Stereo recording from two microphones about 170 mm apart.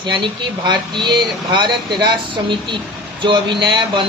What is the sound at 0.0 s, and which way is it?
Speech, 30° right (ahead or behind).